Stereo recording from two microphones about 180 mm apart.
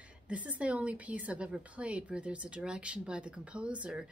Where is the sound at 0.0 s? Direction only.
5° right (ahead or behind).